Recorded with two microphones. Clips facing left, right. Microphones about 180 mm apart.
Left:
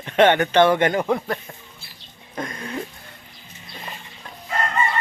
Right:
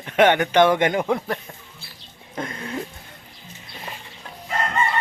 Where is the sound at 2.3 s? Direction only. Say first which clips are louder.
Even; 25° right (ahead or behind).